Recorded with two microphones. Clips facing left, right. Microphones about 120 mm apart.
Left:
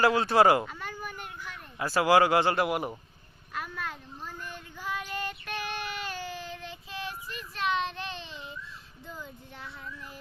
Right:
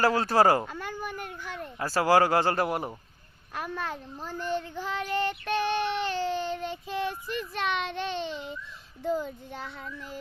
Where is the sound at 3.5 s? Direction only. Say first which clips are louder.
Right 3 dB; 40° right (ahead or behind).